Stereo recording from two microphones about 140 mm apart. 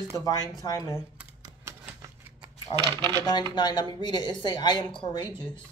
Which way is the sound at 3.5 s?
35° left (ahead or behind).